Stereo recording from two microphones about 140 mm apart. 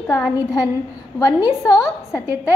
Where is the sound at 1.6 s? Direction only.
25° left (ahead or behind).